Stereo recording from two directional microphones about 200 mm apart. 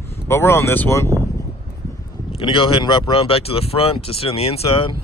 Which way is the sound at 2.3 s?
25° left (ahead or behind).